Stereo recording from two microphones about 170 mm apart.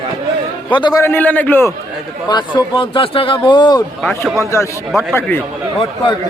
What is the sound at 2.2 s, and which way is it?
A man's voice, 25° left (ahead or behind).